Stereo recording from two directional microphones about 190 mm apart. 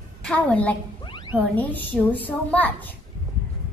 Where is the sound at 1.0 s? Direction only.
25° left (ahead or behind).